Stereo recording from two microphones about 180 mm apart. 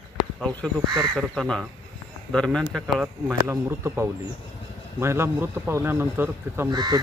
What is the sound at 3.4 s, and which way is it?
A man's voice, 15° right (ahead or behind).